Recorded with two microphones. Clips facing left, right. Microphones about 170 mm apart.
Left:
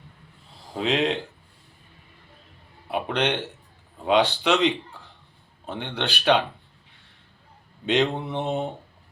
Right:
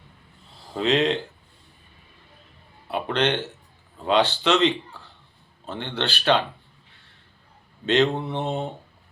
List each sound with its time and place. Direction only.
0.7 s mantra: 10° left (ahead or behind)
2.9 s a sound: 15° left (ahead or behind)
4.0 s mantra: 15° left (ahead or behind)
7.9 s mantra: 15° left (ahead or behind)